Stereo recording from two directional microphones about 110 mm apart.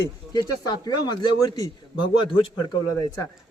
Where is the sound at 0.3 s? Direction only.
40° left (ahead or behind).